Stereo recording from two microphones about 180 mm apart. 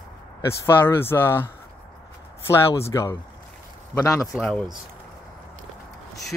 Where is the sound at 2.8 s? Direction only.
15° left (ahead or behind).